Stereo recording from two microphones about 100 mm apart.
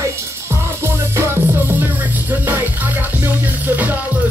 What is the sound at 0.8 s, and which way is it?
Music, 25° right (ahead or behind).